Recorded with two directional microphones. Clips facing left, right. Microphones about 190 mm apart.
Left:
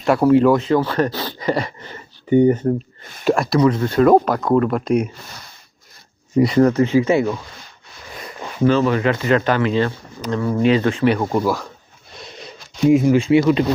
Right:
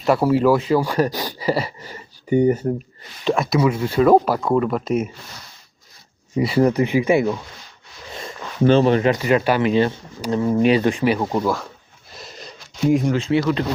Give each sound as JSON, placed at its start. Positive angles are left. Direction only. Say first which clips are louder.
{"t": 0.0, "sound": "speech", "louder": "left 3 dB", "side_deg": -5}
{"t": 6.3, "sound": "speech", "louder": "left 3 dB", "side_deg": -10}
{"t": 8.1, "sound": "a sound", "louder": "left 1 dB", "side_deg": -25}
{"t": 9.0, "sound": "speech", "louder": "even", "side_deg": -15}
{"t": 11.1, "sound": "speech", "louder": "left 2 dB", "side_deg": 0}
{"t": 12.1, "sound": "a sound", "louder": "left 2 dB", "side_deg": 0}
{"t": 12.9, "sound": "speech", "louder": "left 4 dB", "side_deg": 0}
{"t": 13.1, "sound": "speech", "louder": "left 5 dB", "side_deg": 15}